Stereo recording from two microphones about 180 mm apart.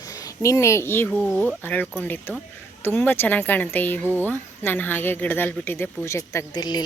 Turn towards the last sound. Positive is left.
turn(degrees=20)  # may be behind; listen again after turning